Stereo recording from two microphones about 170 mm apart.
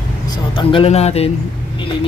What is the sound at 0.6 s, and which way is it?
Speech, 30° left (ahead or behind).